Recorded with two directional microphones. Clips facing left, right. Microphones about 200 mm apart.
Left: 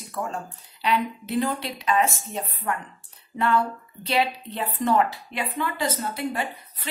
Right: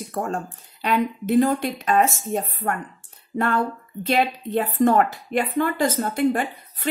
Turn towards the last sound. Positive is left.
turn(degrees=-50)  # may be behind; listen again after turning